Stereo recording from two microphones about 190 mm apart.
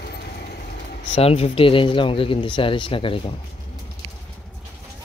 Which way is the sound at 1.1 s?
30° left (ahead or behind).